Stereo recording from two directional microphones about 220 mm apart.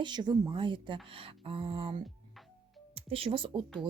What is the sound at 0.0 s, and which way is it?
Speech, 20° right (ahead or behind).